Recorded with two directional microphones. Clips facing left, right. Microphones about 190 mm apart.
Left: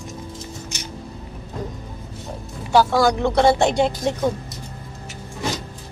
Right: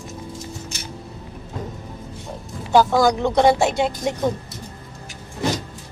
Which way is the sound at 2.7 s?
15° right (ahead or behind).